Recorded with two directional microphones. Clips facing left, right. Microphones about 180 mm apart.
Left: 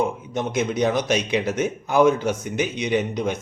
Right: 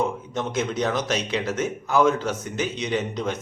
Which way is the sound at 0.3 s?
15° left (ahead or behind).